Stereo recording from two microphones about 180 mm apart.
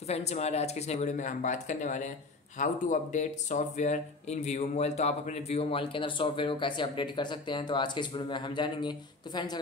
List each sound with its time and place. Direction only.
0.1 s speech: 35° left (ahead or behind)